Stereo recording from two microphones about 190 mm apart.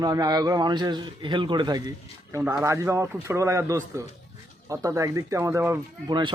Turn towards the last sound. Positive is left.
turn(degrees=-25)  # may be behind; listen again after turning